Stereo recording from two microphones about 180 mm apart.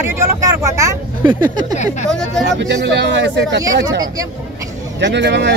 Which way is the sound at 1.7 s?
40° left (ahead or behind).